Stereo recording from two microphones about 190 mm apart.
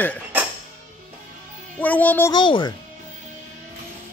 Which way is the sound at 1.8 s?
10° left (ahead or behind).